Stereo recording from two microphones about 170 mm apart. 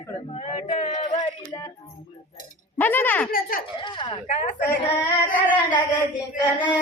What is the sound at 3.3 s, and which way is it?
Speech, 55° left (ahead or behind).